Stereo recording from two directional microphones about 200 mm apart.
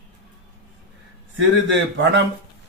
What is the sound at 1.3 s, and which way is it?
Speech, 65° right (ahead or behind).